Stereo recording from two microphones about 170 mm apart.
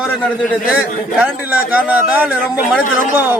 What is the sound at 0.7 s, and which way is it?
A man's voice, 5° right (ahead or behind).